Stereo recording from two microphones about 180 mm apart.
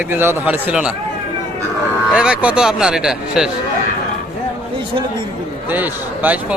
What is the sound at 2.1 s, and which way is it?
A man's voice, 5° right (ahead or behind).